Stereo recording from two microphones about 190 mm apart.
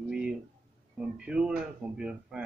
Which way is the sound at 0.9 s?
5° right (ahead or behind).